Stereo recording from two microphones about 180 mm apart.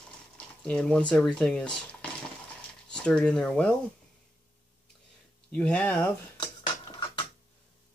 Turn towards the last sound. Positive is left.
turn(degrees=25)  # may be behind; listen again after turning